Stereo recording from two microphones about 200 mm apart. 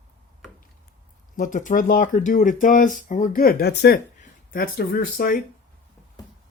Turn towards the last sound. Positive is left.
turn(degrees=50)  # may be behind; listen again after turning